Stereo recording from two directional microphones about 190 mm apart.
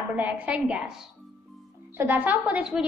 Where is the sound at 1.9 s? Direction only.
10° right (ahead or behind).